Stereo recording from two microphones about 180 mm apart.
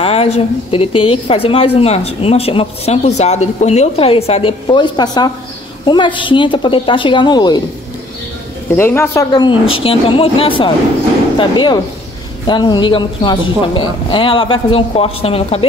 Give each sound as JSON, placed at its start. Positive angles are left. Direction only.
{"t": 0.0, "sound": "a woman's voice", "side_deg": 35}
{"t": 8.7, "sound": "speech", "side_deg": 10}